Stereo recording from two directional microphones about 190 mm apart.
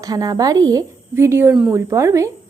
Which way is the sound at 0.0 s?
20° right (ahead or behind).